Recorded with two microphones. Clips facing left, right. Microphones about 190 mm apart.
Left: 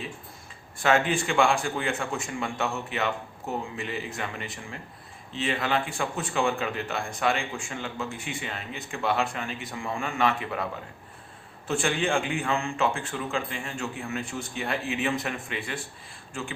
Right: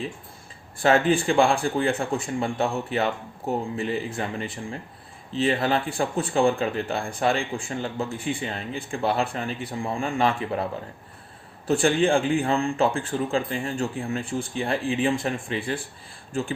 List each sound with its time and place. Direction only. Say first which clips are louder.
0.8 s a man's voice: right 4 dB; 35° right (ahead or behind)